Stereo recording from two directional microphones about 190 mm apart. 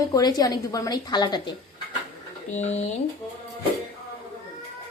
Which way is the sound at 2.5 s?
35° left (ahead or behind).